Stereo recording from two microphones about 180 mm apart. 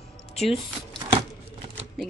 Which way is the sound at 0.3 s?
35° left (ahead or behind).